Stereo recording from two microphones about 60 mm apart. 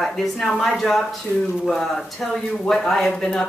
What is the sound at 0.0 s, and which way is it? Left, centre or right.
A woman's voice, centre.